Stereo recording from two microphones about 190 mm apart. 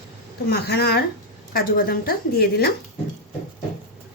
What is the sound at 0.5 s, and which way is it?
A woman's voice, 55° left (ahead or behind).